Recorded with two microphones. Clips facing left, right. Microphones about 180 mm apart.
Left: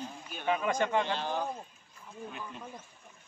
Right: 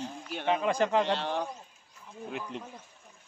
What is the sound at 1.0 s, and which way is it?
A man's voice, 75° right (ahead or behind).